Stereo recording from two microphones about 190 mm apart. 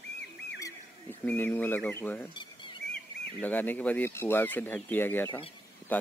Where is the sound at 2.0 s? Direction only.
10° left (ahead or behind).